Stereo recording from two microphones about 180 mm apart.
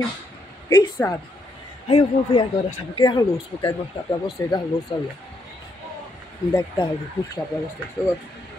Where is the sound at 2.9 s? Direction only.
25° left (ahead or behind).